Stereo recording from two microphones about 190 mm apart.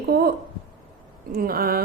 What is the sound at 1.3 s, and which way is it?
Speech, 50° right (ahead or behind).